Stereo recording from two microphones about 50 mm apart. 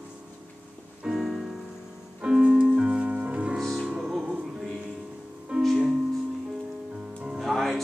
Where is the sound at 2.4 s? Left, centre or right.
Right.